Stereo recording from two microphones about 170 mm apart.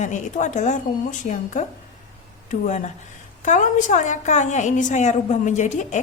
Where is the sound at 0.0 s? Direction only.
45° left (ahead or behind).